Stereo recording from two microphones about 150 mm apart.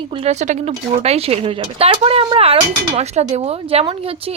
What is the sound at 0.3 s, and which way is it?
A woman's voice, 50° right (ahead or behind).